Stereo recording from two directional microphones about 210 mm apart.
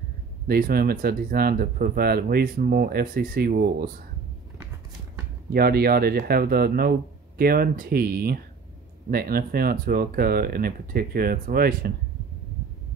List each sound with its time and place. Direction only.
0.5 s speech: 45° right (ahead or behind)
5.5 s speech: 45° right (ahead or behind)